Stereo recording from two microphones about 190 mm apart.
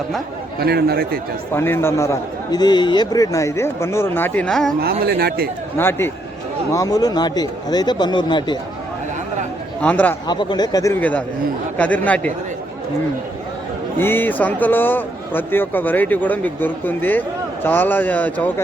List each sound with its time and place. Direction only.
0.6 s a man's voice: 55° right (ahead or behind)
1.5 s speech: 10° left (ahead or behind)
4.8 s speech: 55° right (ahead or behind)
5.7 s speech: 10° left (ahead or behind)
9.8 s speech: 10° left (ahead or behind)
10.2 s speech: 20° left (ahead or behind)
11.8 s speech: 10° left (ahead or behind)
14.0 s speech: 10° left (ahead or behind)